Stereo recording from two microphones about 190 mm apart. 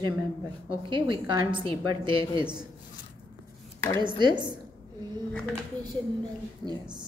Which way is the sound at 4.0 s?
25° right (ahead or behind).